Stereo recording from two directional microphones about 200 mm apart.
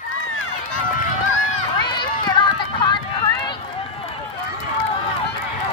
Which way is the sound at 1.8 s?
20° left (ahead or behind).